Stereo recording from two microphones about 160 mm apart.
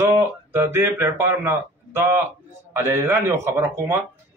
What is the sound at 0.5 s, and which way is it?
A man's voice, 15° right (ahead or behind).